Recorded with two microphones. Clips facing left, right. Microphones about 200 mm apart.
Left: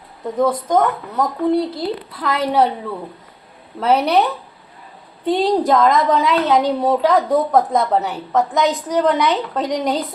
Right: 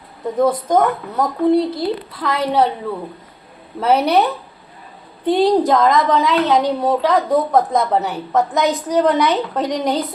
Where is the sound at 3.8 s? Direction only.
5° right (ahead or behind).